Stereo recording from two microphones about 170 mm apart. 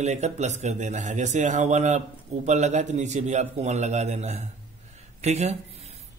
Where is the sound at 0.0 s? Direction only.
40° right (ahead or behind).